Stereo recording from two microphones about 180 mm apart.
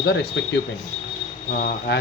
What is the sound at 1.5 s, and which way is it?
Speech, 60° left (ahead or behind).